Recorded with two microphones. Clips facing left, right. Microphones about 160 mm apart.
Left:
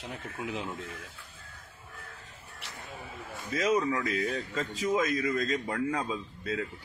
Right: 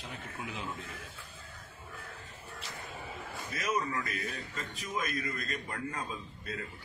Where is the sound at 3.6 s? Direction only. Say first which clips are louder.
Left 7 dB; 80° left.